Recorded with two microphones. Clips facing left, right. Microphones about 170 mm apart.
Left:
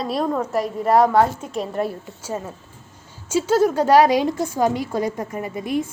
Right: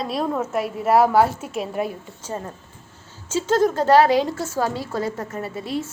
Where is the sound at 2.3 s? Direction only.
5° left (ahead or behind).